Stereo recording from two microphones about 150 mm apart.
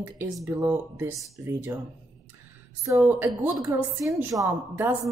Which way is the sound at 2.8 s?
15° right (ahead or behind).